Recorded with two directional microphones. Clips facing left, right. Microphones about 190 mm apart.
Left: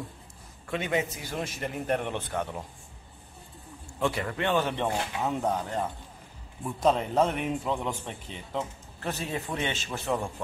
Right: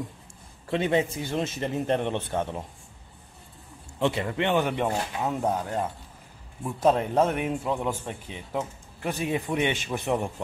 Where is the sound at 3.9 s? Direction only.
20° right (ahead or behind).